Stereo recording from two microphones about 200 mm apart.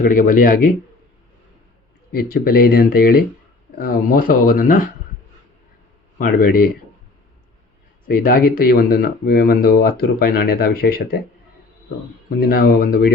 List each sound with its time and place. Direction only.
0.0 s speech: 45° left (ahead or behind)
2.3 s speech: 50° left (ahead or behind)
6.1 s speech: 45° left (ahead or behind)
8.0 s speech: 45° left (ahead or behind)
12.4 s speech: 50° left (ahead or behind)